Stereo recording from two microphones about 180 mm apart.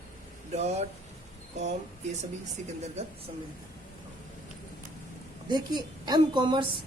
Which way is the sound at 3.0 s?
35° right (ahead or behind).